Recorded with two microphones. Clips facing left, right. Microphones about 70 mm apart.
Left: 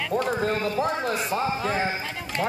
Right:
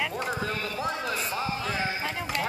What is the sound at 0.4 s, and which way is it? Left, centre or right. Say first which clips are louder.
A man's voice: left 6 dB; left.